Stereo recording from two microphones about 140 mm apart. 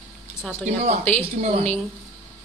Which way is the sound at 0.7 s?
50° right (ahead or behind).